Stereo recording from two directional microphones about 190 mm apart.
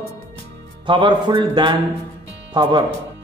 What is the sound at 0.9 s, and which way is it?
Speech, 25° right (ahead or behind).